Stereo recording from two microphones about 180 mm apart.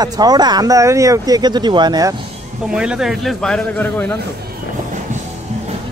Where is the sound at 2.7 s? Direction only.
5° right (ahead or behind).